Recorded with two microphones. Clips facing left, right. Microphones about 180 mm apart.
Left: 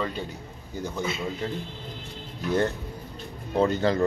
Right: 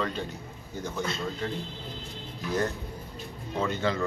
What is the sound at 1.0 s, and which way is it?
Speech, centre (ahead or behind).